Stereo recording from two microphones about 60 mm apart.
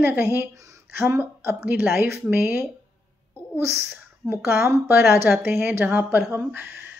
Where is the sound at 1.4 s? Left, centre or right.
Right.